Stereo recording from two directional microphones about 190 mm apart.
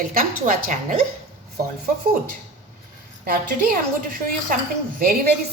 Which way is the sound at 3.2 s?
50° right (ahead or behind).